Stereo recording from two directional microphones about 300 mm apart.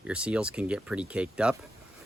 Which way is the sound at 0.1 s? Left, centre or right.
Centre.